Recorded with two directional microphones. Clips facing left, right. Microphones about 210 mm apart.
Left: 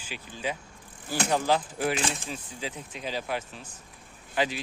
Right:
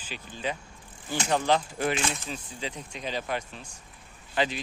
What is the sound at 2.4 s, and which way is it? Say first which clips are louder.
Speech: even; 5° left (ahead or behind).